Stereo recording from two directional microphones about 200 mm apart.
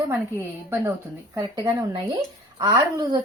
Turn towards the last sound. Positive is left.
turn(degrees=-20)  # may be behind; listen again after turning